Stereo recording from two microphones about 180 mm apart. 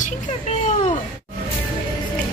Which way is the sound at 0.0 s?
40° left (ahead or behind).